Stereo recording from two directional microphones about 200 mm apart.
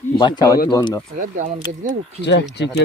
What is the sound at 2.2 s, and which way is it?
Speech, 60° left (ahead or behind).